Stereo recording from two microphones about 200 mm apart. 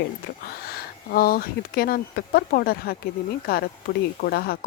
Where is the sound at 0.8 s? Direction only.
50° left (ahead or behind).